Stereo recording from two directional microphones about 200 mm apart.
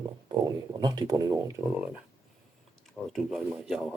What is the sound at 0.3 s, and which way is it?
Speech, 20° right (ahead or behind).